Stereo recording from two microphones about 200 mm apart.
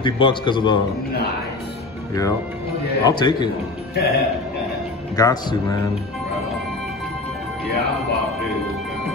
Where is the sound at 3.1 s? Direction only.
20° left (ahead or behind).